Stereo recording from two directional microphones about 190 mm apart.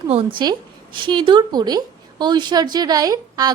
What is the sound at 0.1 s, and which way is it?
A woman's voice, 30° right (ahead or behind).